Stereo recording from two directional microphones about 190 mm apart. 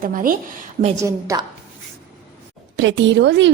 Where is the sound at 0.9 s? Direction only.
15° right (ahead or behind).